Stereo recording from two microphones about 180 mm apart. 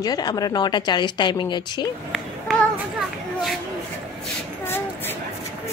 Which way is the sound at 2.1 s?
Centre (ahead or behind).